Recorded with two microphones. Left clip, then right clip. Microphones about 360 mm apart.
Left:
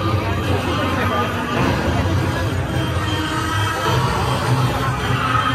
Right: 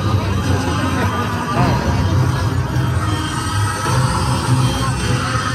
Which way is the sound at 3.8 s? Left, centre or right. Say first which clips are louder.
Right 1 dB; centre.